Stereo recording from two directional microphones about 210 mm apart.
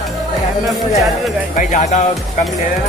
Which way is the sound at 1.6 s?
35° left (ahead or behind).